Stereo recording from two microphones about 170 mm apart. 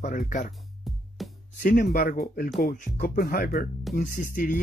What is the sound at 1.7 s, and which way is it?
Speech, 55° left (ahead or behind).